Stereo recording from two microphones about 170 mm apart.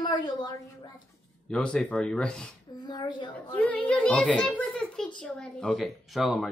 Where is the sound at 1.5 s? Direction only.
5° left (ahead or behind).